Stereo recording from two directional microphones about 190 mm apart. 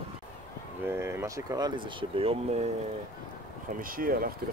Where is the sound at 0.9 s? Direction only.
15° right (ahead or behind); by 2.6 s 30° right (ahead or behind).